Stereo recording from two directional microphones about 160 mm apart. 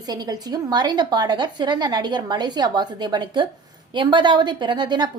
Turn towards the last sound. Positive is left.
turn(degrees=-30)  # may be behind; listen again after turning